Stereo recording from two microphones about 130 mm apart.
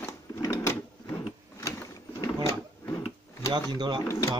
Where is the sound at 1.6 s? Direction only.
20° left (ahead or behind).